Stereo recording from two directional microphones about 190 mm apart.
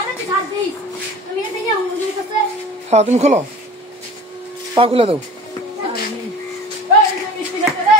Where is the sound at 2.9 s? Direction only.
35° right (ahead or behind).